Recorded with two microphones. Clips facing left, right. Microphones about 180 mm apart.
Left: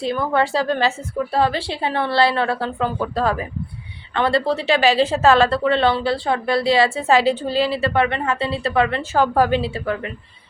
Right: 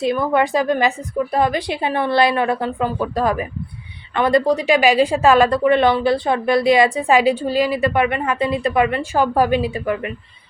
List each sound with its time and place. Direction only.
0.0 s a woman's voice: 15° right (ahead or behind)